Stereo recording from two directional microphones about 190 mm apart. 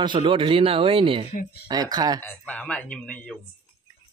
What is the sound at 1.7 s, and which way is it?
Speech, 20° right (ahead or behind).